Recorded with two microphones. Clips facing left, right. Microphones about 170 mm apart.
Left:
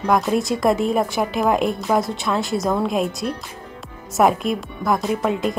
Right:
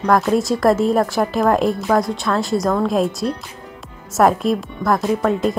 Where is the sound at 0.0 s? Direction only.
Centre (ahead or behind).